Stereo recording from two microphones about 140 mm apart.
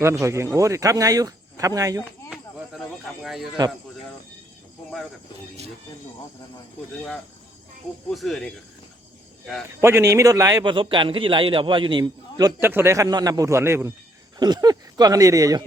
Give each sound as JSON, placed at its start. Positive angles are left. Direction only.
{"t": 0.0, "sound": "speech", "side_deg": -20}
{"t": 2.3, "sound": "a sound", "side_deg": -5}
{"t": 3.2, "sound": "speech", "side_deg": 0}
{"t": 8.1, "sound": "speech", "side_deg": 0}
{"t": 9.8, "sound": "speech", "side_deg": -20}
{"t": 10.6, "sound": "a man's voice", "side_deg": -35}
{"t": 12.5, "sound": "speech", "side_deg": -15}
{"t": 14.3, "sound": "speech", "side_deg": -30}